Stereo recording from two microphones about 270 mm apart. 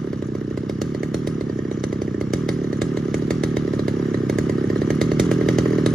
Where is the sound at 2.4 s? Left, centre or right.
Centre.